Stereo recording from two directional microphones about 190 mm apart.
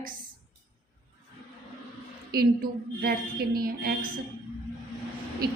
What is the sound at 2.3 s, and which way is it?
A woman's voice, 55° right (ahead or behind).